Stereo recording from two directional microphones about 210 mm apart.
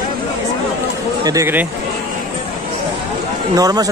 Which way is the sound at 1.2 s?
15° right (ahead or behind).